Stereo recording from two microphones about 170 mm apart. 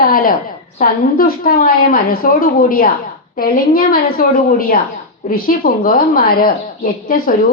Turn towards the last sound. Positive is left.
turn(degrees=60)  # may be behind; listen again after turning